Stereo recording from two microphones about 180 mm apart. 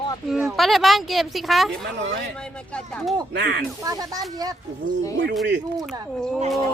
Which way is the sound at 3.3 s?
70° right (ahead or behind).